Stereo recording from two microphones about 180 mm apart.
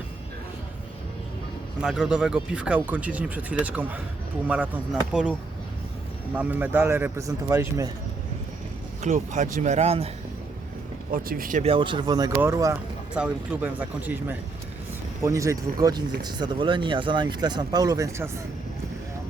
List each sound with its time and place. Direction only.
1.8 s speech: 5° right (ahead or behind)
6.3 s speech: 10° right (ahead or behind)
9.0 s speech: 45° right (ahead or behind)
11.1 s speech: 55° right (ahead or behind)
11.6 s speech: 30° right (ahead or behind)